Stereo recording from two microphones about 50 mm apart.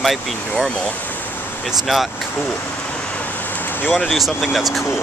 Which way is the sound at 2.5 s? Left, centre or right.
Left.